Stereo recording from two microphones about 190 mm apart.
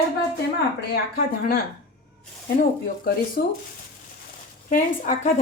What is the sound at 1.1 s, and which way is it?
Speech, 50° left (ahead or behind).